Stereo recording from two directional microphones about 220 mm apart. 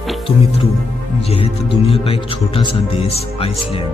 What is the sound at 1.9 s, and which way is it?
A man's voice, 25° left (ahead or behind).